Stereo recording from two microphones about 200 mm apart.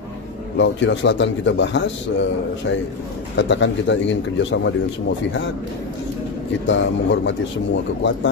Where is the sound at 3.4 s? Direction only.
65° left (ahead or behind).